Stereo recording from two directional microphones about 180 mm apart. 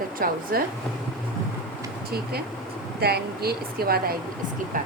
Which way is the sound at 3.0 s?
60° right (ahead or behind).